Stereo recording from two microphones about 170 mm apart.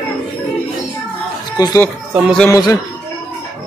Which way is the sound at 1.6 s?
25° left (ahead or behind).